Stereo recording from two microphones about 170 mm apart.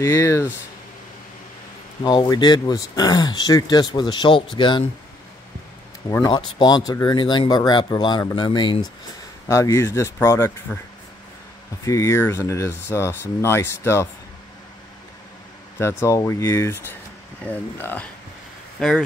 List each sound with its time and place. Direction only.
0.0 s speech: 15° left (ahead or behind)
2.0 s speech: 25° left (ahead or behind)
6.2 s speech: 25° left (ahead or behind)
9.5 s speech: 15° left (ahead or behind)
11.8 s speech: 20° left (ahead or behind)
16.0 s speech: 15° left (ahead or behind); by 19.0 s centre (ahead or behind)